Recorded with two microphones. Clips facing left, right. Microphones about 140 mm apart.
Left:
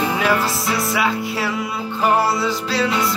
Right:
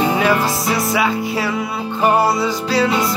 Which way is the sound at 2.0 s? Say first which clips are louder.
Right 3 dB; 20° right (ahead or behind).